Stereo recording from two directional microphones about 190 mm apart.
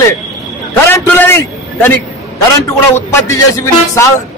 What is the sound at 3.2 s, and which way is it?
Speech, 15° left (ahead or behind).